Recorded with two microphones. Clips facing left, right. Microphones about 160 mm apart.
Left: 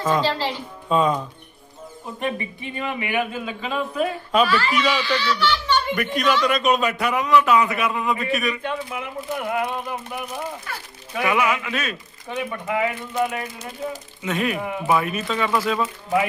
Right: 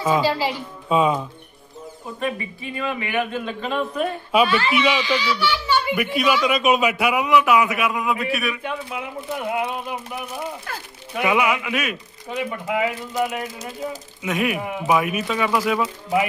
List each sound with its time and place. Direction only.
0.0 s speech: 10° right (ahead or behind)
2.2 s speech: 20° left (ahead or behind); by 4.1 s 5° left (ahead or behind)
4.4 s a man's voice: 25° right (ahead or behind); by 8.7 s 5° right (ahead or behind)
8.9 s speech: 20° right (ahead or behind)
11.3 s speech: 15° right (ahead or behind)